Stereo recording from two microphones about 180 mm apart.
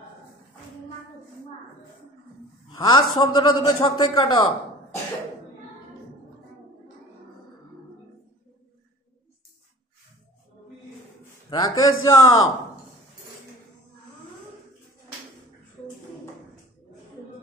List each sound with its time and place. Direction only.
2.7 s a man's voice: 25° left (ahead or behind)
11.5 s a man's voice: 20° left (ahead or behind)
11.9 s a man's voice: 90° left